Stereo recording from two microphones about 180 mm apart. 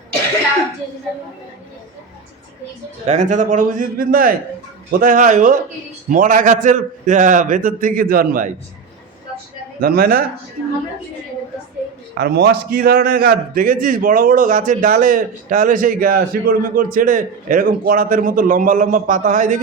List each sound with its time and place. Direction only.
3.1 s a man's voice: 45° right (ahead or behind)
9.8 s a man's voice: 55° right (ahead or behind)
12.2 s a man's voice: 65° right (ahead or behind); by 19.6 s 45° right (ahead or behind)